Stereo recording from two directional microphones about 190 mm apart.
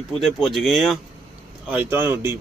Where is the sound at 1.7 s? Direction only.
10° right (ahead or behind).